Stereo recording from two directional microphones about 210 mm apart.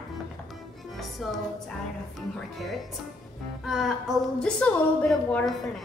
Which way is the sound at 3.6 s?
Centre (ahead or behind).